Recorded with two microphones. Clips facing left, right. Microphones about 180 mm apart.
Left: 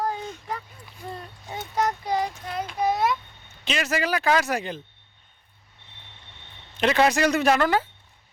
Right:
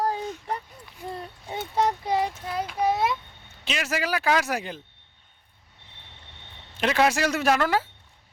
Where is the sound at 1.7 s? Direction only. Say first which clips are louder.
Right 1 dB; 30° right (ahead or behind).